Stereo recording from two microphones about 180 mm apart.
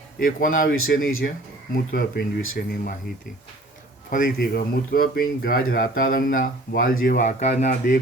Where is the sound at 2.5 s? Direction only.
45° left (ahead or behind).